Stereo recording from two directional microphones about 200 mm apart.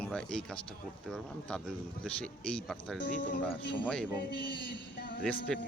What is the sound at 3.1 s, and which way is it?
Speech, 40° left (ahead or behind).